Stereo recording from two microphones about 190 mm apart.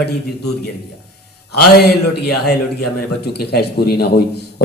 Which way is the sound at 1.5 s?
60° left (ahead or behind).